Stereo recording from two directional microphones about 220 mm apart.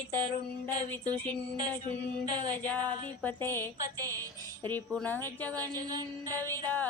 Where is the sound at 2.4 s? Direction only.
5° left (ahead or behind).